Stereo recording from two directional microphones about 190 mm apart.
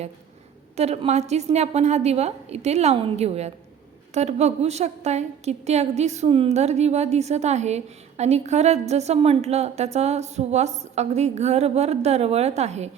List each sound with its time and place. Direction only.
0.8 s a woman's voice: 35° right (ahead or behind)